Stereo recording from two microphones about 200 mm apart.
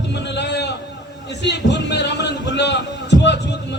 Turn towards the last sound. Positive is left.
turn(degrees=60)  # may be behind; listen again after turning